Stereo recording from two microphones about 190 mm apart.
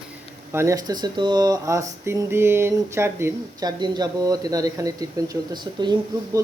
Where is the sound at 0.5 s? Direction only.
15° right (ahead or behind).